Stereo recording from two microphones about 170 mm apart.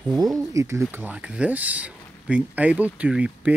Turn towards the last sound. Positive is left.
turn(degrees=-5)  # may be behind; listen again after turning